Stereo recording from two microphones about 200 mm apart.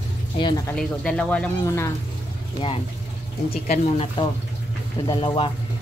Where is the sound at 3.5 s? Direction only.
30° left (ahead or behind).